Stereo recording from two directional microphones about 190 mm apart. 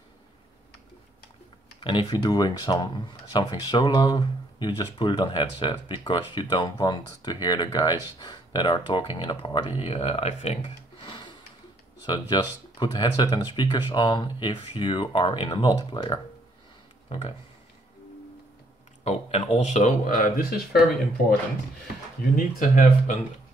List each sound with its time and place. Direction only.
1.8 s speech: 25° left (ahead or behind)
19.0 s speech: 35° left (ahead or behind); by 20.8 s 50° left (ahead or behind)
22.2 s speech: 45° left (ahead or behind)